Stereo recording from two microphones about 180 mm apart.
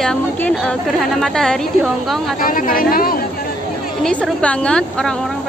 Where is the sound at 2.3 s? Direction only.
50° left (ahead or behind).